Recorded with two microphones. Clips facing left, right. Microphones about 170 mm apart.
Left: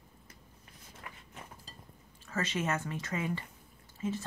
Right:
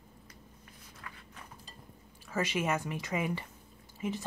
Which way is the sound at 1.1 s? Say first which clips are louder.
Even; 25° left (ahead or behind).